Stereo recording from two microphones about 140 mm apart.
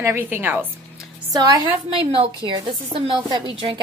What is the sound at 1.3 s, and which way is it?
Speech, 25° right (ahead or behind).